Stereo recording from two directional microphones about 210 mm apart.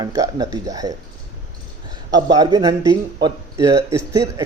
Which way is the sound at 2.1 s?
20° right (ahead or behind).